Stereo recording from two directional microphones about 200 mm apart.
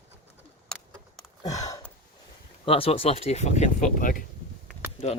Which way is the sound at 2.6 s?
30° left (ahead or behind).